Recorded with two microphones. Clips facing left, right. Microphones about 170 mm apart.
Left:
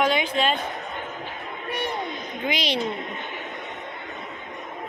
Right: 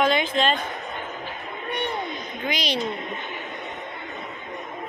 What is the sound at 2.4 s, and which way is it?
Speech, 25° left (ahead or behind).